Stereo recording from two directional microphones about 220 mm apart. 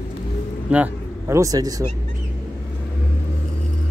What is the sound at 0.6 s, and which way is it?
Speech, 5° right (ahead or behind).